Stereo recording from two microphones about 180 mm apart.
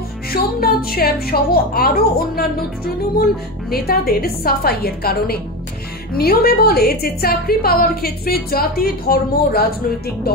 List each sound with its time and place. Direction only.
0.3 s a woman's voice: 55° left (ahead or behind)
3.7 s a woman's voice: 55° left (ahead or behind)